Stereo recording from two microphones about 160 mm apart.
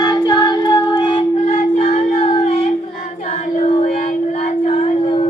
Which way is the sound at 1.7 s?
40° left (ahead or behind).